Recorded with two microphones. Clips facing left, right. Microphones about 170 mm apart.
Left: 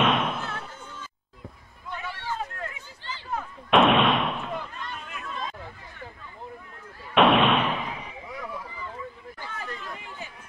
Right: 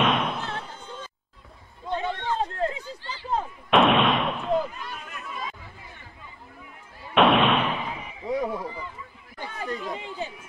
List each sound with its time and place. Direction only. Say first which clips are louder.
0.0 s slam: even; centre (ahead or behind)
0.5 s slam: right 2 dB; 30° right (ahead or behind)
1.9 s a sound: right 6 dB; 25° right (ahead or behind)
3.7 s artillery fire: even; centre (ahead or behind)
7.2 s slam: even; centre (ahead or behind)
8.3 s run: right 12 dB; 30° right (ahead or behind)
9.4 s chatter: right 6 dB; 20° right (ahead or behind)